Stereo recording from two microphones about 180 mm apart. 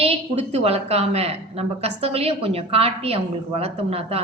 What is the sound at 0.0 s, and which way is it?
A woman's voice, 35° right (ahead or behind).